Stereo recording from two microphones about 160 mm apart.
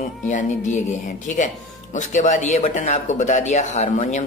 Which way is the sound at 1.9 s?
50° left (ahead or behind).